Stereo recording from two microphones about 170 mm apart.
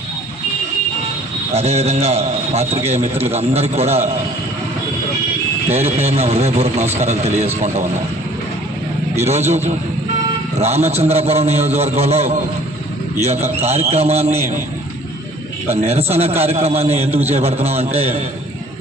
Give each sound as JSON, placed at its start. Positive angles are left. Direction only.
{"t": 1.5, "sound": "a man's voice", "side_deg": -40}
{"t": 5.6, "sound": "a man's voice", "side_deg": -40}
{"t": 9.2, "sound": "a man's voice", "side_deg": -40}
{"t": 10.6, "sound": "a man's voice", "side_deg": -40}
{"t": 15.6, "sound": "a man's voice", "side_deg": -35}